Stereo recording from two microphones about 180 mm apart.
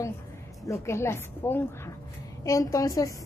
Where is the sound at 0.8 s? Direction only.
15° left (ahead or behind).